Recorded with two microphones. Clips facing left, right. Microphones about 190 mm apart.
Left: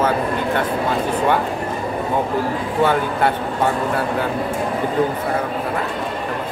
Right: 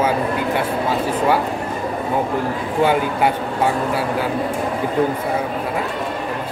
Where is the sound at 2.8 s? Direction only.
10° right (ahead or behind).